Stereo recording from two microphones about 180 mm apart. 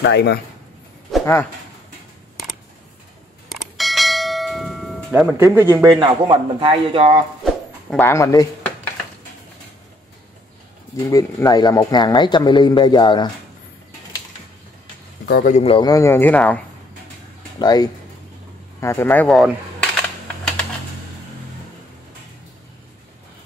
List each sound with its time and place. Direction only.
0.0 s a man's voice: 70° left (ahead or behind)
1.2 s speech: 15° left (ahead or behind)
3.4 s church bell: centre (ahead or behind)
5.4 s a man's voice: 15° right (ahead or behind)
8.0 s speech: 15° left (ahead or behind)
11.1 s speech: 20° left (ahead or behind)
15.2 s speech: 50° left (ahead or behind)
15.8 s speech: 20° left (ahead or behind)
17.6 s speech: 20° left (ahead or behind); by 19.9 s centre (ahead or behind)